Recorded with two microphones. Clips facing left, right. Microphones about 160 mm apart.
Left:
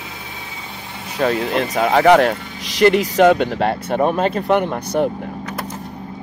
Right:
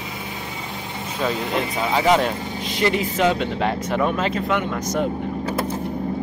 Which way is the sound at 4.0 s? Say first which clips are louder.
Left 5 dB; 40° left (ahead or behind).